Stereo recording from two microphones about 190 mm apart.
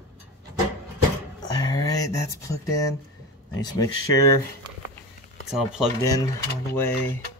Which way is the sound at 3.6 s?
20° left (ahead or behind).